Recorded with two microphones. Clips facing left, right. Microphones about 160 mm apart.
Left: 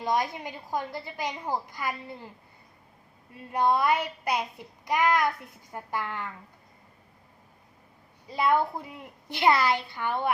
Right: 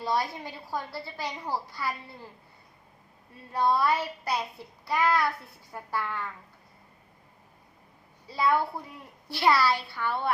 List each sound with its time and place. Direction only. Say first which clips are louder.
0.0 s a woman's voice: left 2 dB; 15° left (ahead or behind)
3.5 s a woman's voice: left 1 dB; 15° left (ahead or behind)
8.3 s a woman's voice: left 1 dB; 20° left (ahead or behind)